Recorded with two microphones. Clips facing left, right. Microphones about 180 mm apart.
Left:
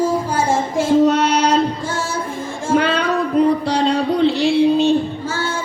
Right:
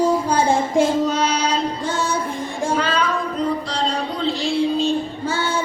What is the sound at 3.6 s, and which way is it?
Music, 65° left (ahead or behind).